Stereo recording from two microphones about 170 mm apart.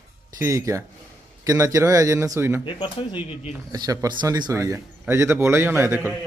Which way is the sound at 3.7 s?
25° right (ahead or behind).